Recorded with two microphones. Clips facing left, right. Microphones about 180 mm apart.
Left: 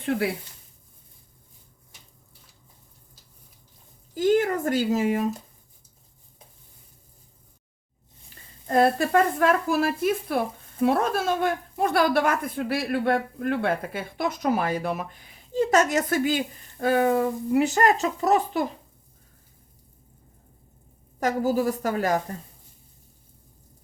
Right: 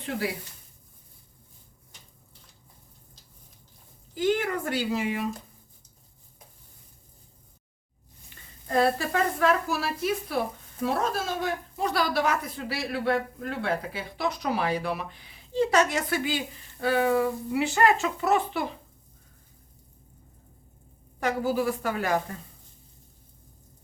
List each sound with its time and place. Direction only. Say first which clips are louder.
4.1 s a woman's voice: left 5 dB; 45° left (ahead or behind)
8.6 s a woman's voice: left 3 dB; 45° left (ahead or behind)
21.2 s speech: left 3 dB; 40° left (ahead or behind)